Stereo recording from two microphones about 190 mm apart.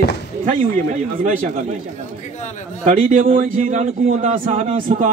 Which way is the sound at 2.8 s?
40° right (ahead or behind).